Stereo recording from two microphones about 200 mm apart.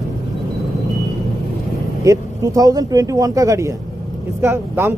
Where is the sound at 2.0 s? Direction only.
15° right (ahead or behind).